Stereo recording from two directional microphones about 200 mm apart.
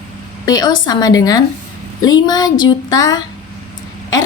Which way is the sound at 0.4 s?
20° left (ahead or behind).